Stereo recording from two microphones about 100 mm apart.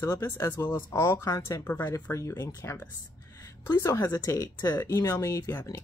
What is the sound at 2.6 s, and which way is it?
Speech, 25° left (ahead or behind).